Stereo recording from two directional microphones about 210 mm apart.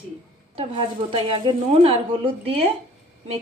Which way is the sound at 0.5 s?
25° right (ahead or behind).